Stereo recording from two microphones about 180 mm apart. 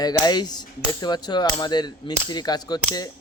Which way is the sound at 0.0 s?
20° left (ahead or behind).